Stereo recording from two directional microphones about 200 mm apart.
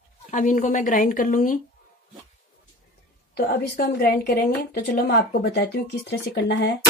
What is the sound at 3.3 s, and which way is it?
A woman's voice, 55° left (ahead or behind).